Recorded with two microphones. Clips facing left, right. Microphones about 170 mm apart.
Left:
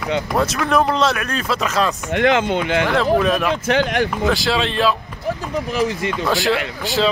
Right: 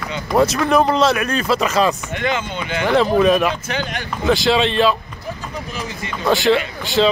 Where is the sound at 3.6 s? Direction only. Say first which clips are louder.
Left 8 dB; 85° left.